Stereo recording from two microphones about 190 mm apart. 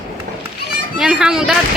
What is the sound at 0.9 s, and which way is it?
Speech, 5° right (ahead or behind).